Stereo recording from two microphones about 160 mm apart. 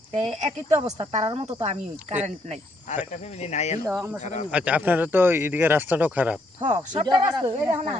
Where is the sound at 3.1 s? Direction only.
45° left (ahead or behind).